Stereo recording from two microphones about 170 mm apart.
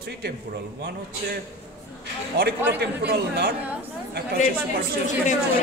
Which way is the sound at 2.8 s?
70° right (ahead or behind).